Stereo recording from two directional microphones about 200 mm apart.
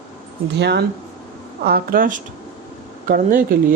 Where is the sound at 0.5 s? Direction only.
55° right (ahead or behind).